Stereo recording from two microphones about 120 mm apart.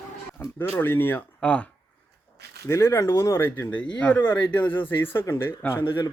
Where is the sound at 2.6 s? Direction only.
25° left (ahead or behind).